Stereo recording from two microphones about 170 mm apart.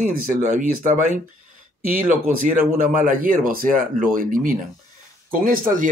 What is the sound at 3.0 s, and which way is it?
Speech, 55° right (ahead or behind).